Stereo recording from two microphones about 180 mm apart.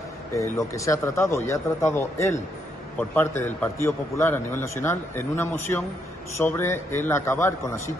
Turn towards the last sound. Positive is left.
turn(degrees=15)  # may be behind; listen again after turning